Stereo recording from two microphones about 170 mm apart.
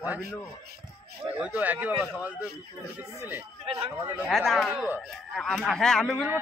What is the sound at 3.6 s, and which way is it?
Speech, 35° right (ahead or behind).